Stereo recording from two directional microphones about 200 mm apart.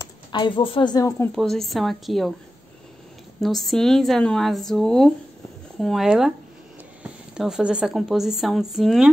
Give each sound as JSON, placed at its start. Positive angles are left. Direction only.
{"t": 0.0, "sound": "speech", "side_deg": 20}
{"t": 1.3, "sound": "speech", "side_deg": 0}
{"t": 3.3, "sound": "speech", "side_deg": 0}